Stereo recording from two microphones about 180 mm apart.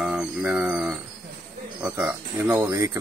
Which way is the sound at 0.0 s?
5° right (ahead or behind).